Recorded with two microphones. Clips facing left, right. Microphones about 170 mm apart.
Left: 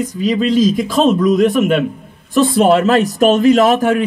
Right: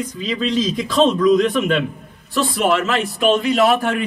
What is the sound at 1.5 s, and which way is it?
Speech, 45° left (ahead or behind).